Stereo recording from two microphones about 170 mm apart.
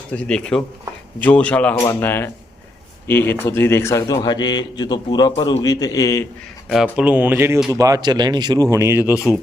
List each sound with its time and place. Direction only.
0.1 s speech: 5° left (ahead or behind)
6.9 s speech: 10° right (ahead or behind)